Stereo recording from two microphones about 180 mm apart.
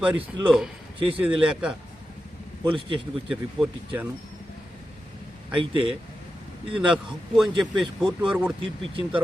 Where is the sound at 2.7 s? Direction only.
30° right (ahead or behind).